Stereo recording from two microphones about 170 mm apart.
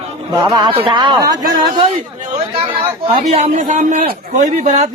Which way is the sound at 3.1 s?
40° right (ahead or behind).